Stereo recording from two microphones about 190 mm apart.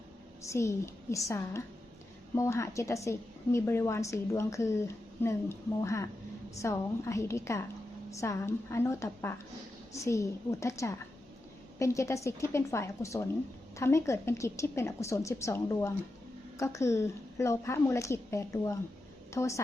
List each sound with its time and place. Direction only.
0.4 s a woman's voice: 15° left (ahead or behind)